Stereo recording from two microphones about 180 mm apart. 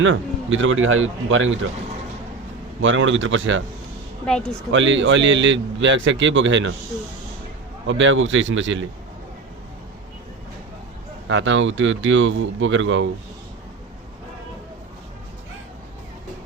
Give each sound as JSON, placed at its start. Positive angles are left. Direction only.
{"t": 0.0, "sound": "speech", "side_deg": -90}
{"t": 2.8, "sound": "speech", "side_deg": -90}
{"t": 4.3, "sound": "speech", "side_deg": 5}
{"t": 4.7, "sound": "speech", "side_deg": -90}
{"t": 7.9, "sound": "speech", "side_deg": -90}
{"t": 11.3, "sound": "speech", "side_deg": -90}